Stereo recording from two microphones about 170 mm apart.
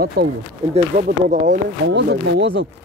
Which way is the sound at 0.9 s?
45° right (ahead or behind).